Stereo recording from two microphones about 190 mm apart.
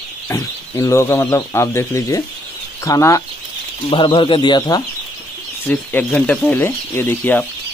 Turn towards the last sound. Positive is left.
turn(degrees=10)  # may be behind; listen again after turning